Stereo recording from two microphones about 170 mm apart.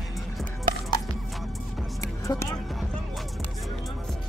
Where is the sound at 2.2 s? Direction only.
20° left (ahead or behind).